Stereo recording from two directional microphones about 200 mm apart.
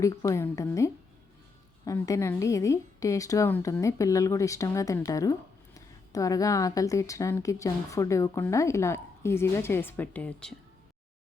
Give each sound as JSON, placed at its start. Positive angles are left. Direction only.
{"t": 0.0, "sound": "speech", "side_deg": 15}